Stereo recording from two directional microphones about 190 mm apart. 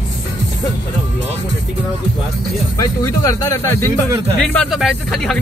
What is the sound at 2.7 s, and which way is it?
Speech, 15° left (ahead or behind).